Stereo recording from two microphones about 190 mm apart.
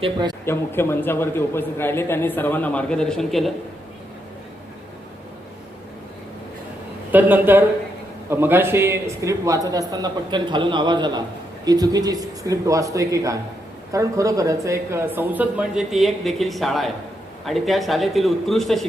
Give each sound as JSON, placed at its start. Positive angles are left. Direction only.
{"t": 0.0, "sound": "a man's voice", "side_deg": -25}
{"t": 0.4, "sound": "a man's voice", "side_deg": 10}
{"t": 7.1, "sound": "a man's voice", "side_deg": -10}